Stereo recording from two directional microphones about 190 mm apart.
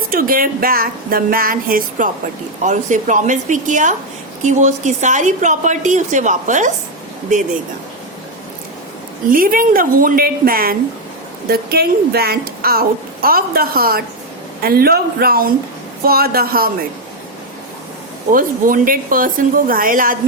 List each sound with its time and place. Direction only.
0.1 s a woman's voice: 50° right (ahead or behind)
9.3 s a woman's voice: 50° right (ahead or behind)
18.3 s speech: 45° right (ahead or behind)